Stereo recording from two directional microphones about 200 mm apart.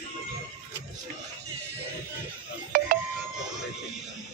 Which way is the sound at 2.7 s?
45° right (ahead or behind).